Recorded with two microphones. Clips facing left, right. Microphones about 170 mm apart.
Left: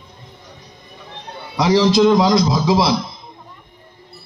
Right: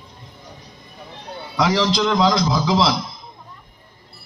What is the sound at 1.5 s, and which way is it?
Music, 25° left (ahead or behind).